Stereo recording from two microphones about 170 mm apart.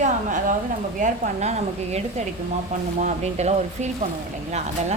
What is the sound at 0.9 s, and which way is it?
Speech, 50° right (ahead or behind).